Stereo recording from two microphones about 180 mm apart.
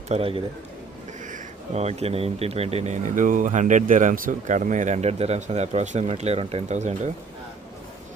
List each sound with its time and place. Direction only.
0.1 s speech: 30° right (ahead or behind)